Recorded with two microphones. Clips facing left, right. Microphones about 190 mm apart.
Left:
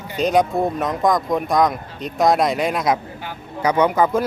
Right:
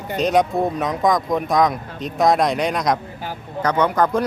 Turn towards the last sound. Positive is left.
turn(degrees=5)  # may be behind; listen again after turning